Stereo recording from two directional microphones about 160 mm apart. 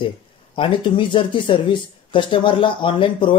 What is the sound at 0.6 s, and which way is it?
Speech, 30° left (ahead or behind).